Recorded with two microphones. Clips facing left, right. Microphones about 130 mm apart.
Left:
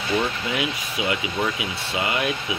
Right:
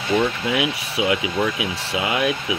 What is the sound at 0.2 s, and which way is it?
Speech, 90° right.